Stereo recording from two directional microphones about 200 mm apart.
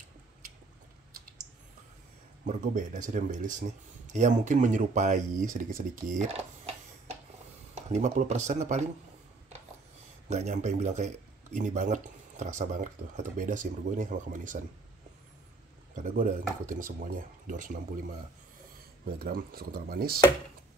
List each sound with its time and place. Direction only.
2.4 s speech: 40° right (ahead or behind)
7.7 s speech: 35° right (ahead or behind)
10.2 s speech: 35° right (ahead or behind)
15.9 s speech: 40° right (ahead or behind)
19.0 s speech: 45° right (ahead or behind)